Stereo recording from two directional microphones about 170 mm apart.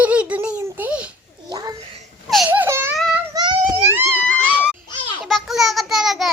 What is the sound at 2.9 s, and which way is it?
Child singing, centre (ahead or behind).